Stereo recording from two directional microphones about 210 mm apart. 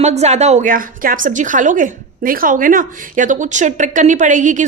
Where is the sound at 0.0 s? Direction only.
30° right (ahead or behind).